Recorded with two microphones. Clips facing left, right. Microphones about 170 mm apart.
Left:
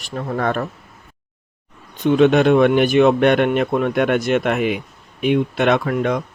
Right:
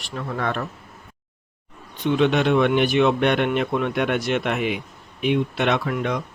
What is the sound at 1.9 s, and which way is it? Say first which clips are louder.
Speech: left 6 dB; 45° left (ahead or behind).